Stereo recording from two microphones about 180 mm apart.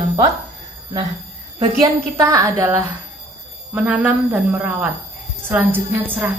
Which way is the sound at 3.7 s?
5° right (ahead or behind).